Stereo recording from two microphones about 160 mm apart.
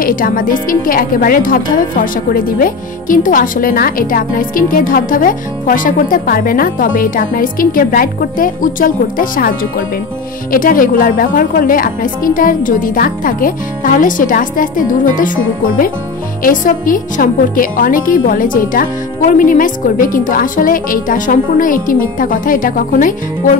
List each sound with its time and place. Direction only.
0.0 s a woman's voice: 60° left (ahead or behind)
16.4 s a woman's voice: 60° left (ahead or behind)